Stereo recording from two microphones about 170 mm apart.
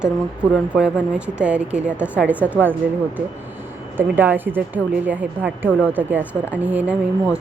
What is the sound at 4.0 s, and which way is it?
A woman's voice, 10° right (ahead or behind).